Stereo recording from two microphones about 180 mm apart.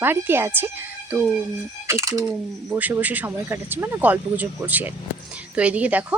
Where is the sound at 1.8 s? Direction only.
15° right (ahead or behind).